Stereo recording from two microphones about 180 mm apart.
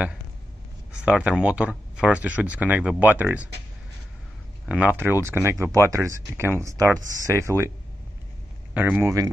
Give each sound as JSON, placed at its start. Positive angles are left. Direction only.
{"t": 1.0, "sound": "speech", "side_deg": -5}
{"t": 4.6, "sound": "speech", "side_deg": -10}
{"t": 8.7, "sound": "speech", "side_deg": -10}